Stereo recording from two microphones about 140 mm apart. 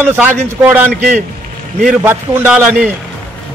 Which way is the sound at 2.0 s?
15° right (ahead or behind).